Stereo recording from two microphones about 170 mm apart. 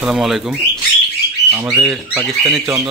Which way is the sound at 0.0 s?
Centre (ahead or behind).